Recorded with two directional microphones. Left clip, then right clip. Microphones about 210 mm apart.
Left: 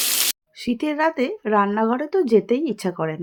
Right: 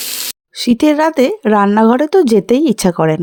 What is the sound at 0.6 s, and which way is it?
Speech, 50° right (ahead or behind).